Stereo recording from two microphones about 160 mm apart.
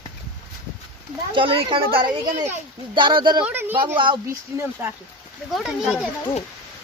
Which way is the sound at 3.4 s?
10° right (ahead or behind).